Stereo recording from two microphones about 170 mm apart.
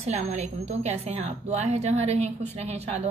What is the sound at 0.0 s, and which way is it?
A woman's voice, 40° right (ahead or behind).